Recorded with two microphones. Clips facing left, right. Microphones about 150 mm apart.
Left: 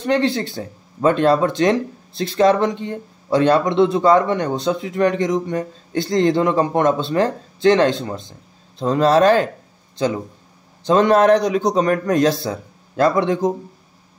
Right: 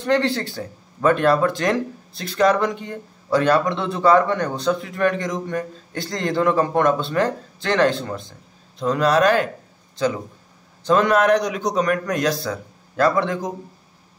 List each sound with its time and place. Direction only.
0.0 s speech: 20° left (ahead or behind)